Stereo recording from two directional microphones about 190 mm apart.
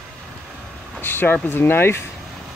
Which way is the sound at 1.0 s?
10° left (ahead or behind).